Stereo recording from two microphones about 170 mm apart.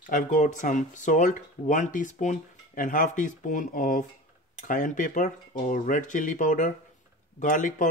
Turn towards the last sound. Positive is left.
turn(degrees=50)  # may be behind; listen again after turning